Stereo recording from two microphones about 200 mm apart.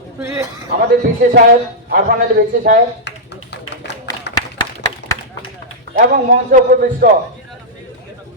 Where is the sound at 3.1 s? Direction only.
60° left (ahead or behind).